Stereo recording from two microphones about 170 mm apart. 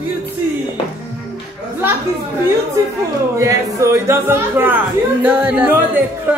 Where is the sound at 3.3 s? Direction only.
20° right (ahead or behind).